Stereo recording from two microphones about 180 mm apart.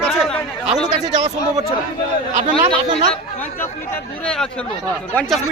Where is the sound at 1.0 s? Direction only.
40° right (ahead or behind).